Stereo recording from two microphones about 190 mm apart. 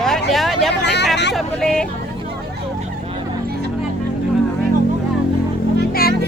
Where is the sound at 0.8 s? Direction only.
65° left (ahead or behind).